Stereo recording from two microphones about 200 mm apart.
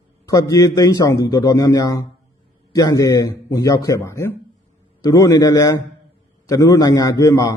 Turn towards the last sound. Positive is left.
turn(degrees=15)  # may be behind; listen again after turning